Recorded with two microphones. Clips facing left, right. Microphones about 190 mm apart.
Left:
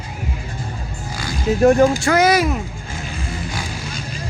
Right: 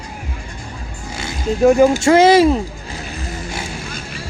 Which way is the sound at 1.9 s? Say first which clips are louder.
Right 5 dB; 25° right (ahead or behind).